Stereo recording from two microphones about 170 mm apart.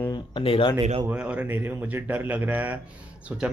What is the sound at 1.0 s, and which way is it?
A man's voice, 10° right (ahead or behind).